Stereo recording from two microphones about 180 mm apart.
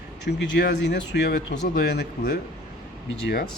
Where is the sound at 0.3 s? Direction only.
70° left (ahead or behind).